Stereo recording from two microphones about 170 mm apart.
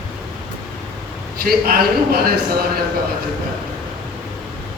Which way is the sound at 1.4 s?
60° right (ahead or behind).